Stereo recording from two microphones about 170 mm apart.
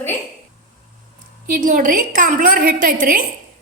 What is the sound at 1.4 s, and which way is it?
A woman's voice, 55° right (ahead or behind).